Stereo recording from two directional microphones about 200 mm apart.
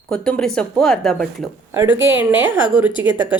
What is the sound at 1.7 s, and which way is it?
Speech, 10° right (ahead or behind).